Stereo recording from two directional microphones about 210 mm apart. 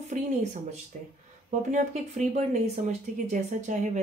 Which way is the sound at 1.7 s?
35° right (ahead or behind).